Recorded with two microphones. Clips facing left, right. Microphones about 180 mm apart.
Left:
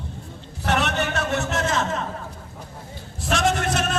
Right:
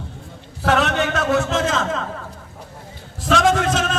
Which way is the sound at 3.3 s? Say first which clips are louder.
Right 5 dB; 90° right.